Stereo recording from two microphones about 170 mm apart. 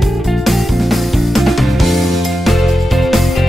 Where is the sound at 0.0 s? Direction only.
Centre (ahead or behind).